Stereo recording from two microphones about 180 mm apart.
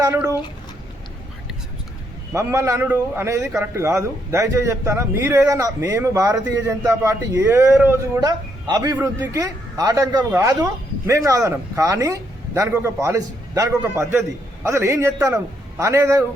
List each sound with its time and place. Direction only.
0.0 s a man's voice: 15° right (ahead or behind)
2.3 s a man's voice: 15° right (ahead or behind)